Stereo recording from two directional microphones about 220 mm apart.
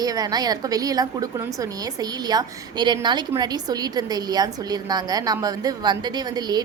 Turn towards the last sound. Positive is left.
turn(degrees=-20)  # may be behind; listen again after turning